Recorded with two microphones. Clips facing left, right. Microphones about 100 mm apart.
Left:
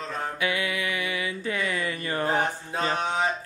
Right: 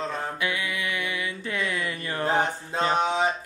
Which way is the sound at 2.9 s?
15° right (ahead or behind).